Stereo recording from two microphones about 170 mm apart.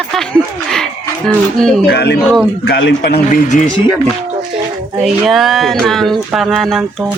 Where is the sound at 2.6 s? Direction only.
85° left.